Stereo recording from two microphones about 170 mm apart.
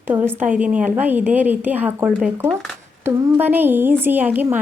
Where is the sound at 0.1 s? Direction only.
20° right (ahead or behind).